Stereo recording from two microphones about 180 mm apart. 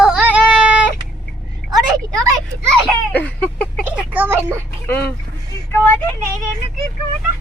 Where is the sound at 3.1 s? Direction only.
10° left (ahead or behind).